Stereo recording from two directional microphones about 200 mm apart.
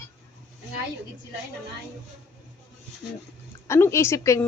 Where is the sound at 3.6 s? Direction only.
15° left (ahead or behind).